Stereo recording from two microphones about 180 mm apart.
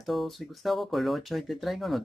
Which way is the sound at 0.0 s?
Centre (ahead or behind).